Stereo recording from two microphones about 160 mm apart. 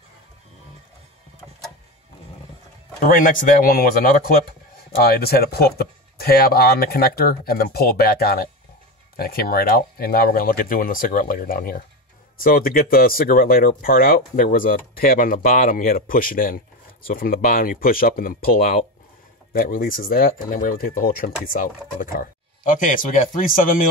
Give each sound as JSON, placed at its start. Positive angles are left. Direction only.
{"t": 3.0, "sound": "speech", "side_deg": 55}